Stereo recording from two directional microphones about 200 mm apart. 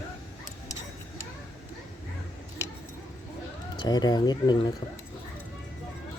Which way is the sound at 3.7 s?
20° left (ahead or behind).